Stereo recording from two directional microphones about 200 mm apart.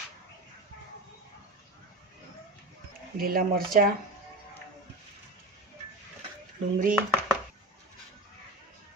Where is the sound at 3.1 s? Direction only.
45° right (ahead or behind).